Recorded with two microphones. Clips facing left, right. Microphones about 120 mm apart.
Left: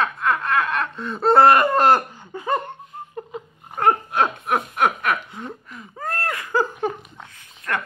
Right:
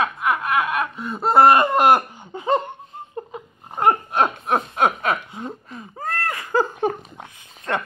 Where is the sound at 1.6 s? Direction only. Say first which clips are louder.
Right 1 dB; 15° right (ahead or behind).